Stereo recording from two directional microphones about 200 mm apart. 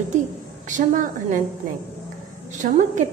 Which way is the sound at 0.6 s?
40° right (ahead or behind).